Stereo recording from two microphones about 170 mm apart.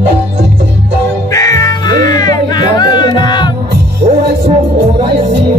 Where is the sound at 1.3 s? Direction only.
20° left (ahead or behind).